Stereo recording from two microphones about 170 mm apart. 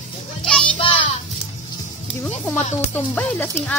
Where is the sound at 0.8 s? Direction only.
30° left (ahead or behind).